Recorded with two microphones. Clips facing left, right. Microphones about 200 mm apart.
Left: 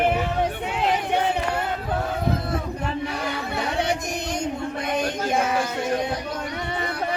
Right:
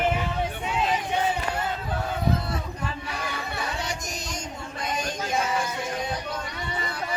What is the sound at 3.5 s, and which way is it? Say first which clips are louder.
Music: left 9 dB; 60° left (ahead or behind).